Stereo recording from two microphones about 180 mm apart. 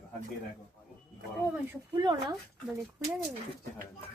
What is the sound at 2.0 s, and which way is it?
Speech, 25° right (ahead or behind).